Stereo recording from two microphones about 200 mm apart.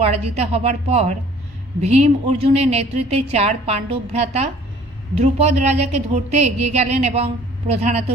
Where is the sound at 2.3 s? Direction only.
30° right (ahead or behind).